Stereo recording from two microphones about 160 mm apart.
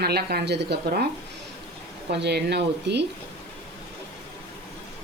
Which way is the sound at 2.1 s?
90° right.